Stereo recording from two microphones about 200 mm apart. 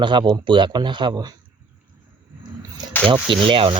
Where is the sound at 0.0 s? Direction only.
25° right (ahead or behind).